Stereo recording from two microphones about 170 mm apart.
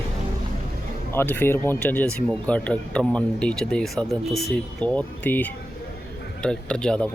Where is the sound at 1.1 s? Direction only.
10° left (ahead or behind).